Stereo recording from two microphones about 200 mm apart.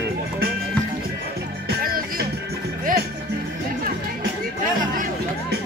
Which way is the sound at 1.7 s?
45° right (ahead or behind).